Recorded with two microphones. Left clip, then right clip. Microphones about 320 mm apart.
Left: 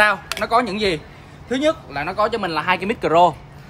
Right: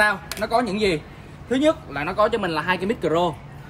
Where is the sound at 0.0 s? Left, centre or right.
Centre.